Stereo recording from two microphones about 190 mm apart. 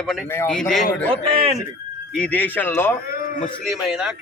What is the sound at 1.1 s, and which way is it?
Speech, 30° right (ahead or behind).